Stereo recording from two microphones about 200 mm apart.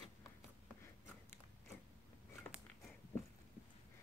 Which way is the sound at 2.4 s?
10° left (ahead or behind).